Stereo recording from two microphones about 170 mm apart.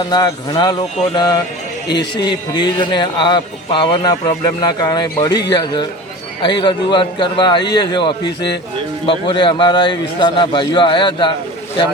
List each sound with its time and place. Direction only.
0.1 s a man's voice: 25° left (ahead or behind)